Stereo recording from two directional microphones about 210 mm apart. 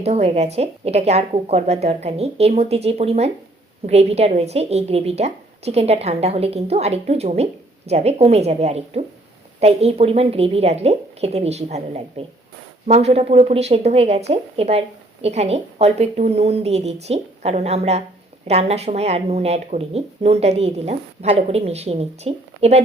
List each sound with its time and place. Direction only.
0.0 s a woman's voice: 30° right (ahead or behind)